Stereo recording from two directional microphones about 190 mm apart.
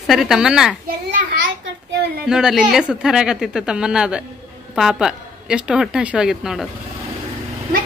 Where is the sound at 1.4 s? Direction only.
65° right (ahead or behind).